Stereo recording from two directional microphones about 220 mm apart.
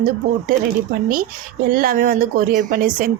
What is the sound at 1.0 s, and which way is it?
A woman's voice, 40° right (ahead or behind).